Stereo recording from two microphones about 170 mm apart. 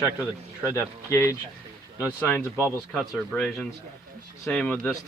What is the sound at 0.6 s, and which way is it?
Speech, 15° left (ahead or behind).